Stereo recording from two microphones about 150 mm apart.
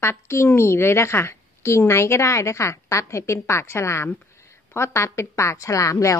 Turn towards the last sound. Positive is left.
turn(degrees=20)  # may be behind; listen again after turning